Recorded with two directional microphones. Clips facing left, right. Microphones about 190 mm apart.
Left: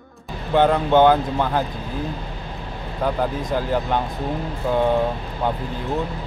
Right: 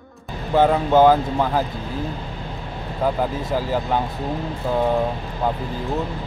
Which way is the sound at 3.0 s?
5° right (ahead or behind).